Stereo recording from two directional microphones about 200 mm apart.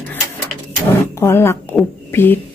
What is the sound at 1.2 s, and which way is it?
Speech, 10° left (ahead or behind).